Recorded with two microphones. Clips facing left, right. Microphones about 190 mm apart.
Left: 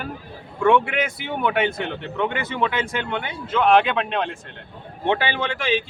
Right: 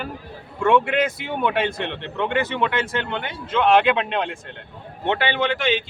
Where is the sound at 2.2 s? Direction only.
5° left (ahead or behind).